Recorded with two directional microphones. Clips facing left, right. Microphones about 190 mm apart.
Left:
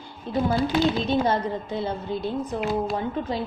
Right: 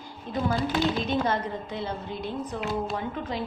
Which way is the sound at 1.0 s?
30° left (ahead or behind).